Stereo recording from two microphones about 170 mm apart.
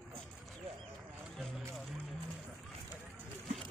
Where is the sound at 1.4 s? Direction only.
Centre (ahead or behind).